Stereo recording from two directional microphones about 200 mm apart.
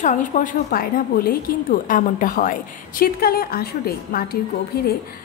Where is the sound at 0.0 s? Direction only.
40° left (ahead or behind).